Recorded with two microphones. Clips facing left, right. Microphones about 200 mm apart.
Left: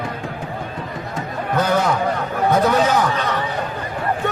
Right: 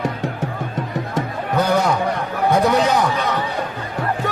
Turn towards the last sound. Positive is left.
turn(degrees=-15)  # may be behind; listen again after turning